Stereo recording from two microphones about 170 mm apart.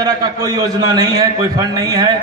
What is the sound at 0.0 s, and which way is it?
A man's voice, 25° right (ahead or behind).